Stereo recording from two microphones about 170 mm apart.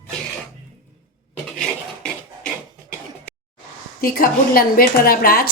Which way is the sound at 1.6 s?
5° left (ahead or behind).